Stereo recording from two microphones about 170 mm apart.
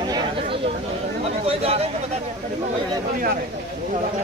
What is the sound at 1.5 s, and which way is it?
Speech, 35° right (ahead or behind).